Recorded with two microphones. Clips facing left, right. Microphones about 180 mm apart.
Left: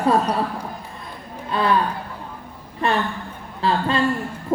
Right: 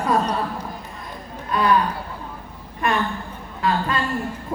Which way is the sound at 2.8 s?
30° left (ahead or behind).